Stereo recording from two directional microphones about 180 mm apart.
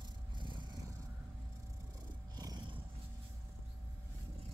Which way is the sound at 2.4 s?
25° right (ahead or behind).